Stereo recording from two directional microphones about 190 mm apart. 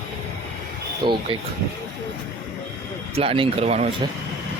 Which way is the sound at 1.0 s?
25° right (ahead or behind).